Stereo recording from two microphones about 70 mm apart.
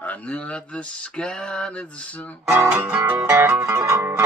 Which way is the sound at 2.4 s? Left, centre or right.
Right.